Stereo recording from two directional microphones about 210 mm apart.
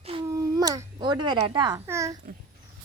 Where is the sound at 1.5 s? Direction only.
20° right (ahead or behind).